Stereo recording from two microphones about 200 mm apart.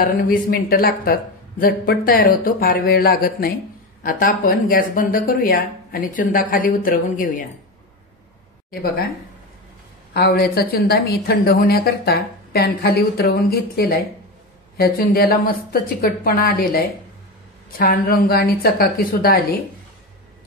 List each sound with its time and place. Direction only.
0.0 s a woman's voice: 45° left (ahead or behind)
10.1 s a woman's voice: 50° left (ahead or behind)